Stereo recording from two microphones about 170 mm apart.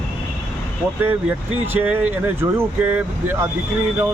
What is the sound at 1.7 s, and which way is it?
Speech, 10° right (ahead or behind).